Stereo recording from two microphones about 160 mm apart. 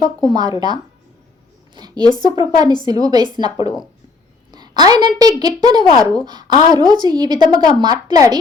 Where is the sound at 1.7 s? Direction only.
25° right (ahead or behind).